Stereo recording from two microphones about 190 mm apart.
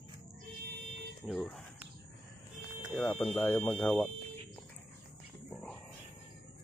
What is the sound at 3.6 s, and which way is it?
Speech, 5° left (ahead or behind).